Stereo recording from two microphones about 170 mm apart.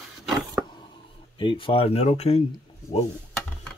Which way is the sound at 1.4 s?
30° left (ahead or behind).